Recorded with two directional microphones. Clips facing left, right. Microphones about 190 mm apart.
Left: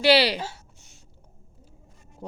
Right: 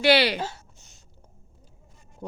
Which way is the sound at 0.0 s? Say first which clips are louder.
Left 1 dB; 35° left (ahead or behind).